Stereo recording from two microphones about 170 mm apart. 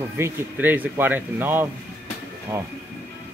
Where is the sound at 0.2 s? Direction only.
10° right (ahead or behind).